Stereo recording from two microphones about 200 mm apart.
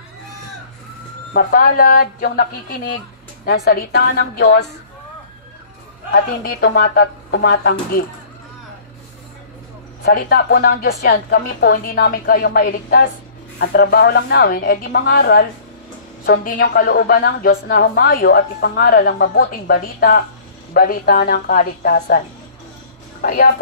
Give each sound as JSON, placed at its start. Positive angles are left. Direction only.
{"t": 1.3, "sound": "a woman's voice", "side_deg": 45}
{"t": 3.4, "sound": "a woman's voice", "side_deg": 50}
{"t": 6.4, "sound": "a woman's voice", "side_deg": 50}
{"t": 10.0, "sound": "a woman's voice", "side_deg": 50}
{"t": 23.2, "sound": "a woman's voice", "side_deg": 45}